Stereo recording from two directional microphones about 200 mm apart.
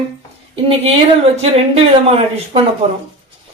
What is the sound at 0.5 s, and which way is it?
Speech, 30° right (ahead or behind).